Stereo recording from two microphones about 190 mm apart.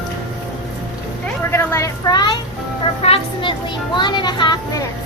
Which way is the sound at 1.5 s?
15° left (ahead or behind).